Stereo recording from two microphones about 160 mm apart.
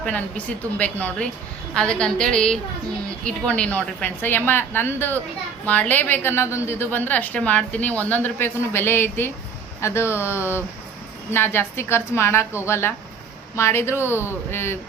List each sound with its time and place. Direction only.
0.0 s a woman's voice: 10° left (ahead or behind)